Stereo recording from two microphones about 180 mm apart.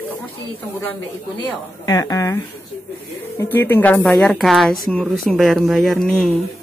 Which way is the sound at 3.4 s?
10° left (ahead or behind).